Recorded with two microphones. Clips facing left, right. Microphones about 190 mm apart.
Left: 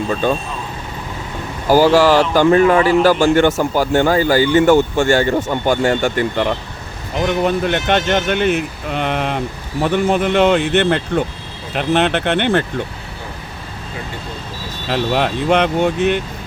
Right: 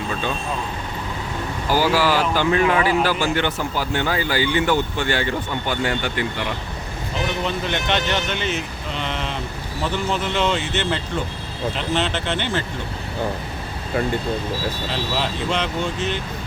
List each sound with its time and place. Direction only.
1.7 s speech: 45° left (ahead or behind)
14.8 s speech: 60° left (ahead or behind)